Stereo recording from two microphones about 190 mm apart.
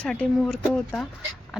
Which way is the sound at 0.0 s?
5° left (ahead or behind).